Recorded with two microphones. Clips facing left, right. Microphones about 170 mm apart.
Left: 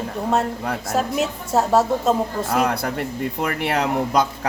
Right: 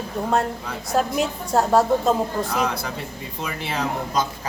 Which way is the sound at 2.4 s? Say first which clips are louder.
Left 4 dB; 55° left (ahead or behind).